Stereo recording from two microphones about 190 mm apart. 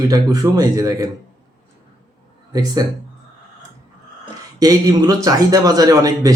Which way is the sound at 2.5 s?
20° right (ahead or behind).